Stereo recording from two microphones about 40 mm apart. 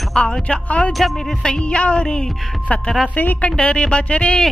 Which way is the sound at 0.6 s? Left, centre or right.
Left.